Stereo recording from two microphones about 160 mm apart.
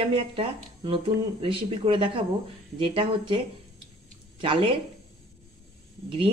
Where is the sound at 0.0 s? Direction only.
35° right (ahead or behind).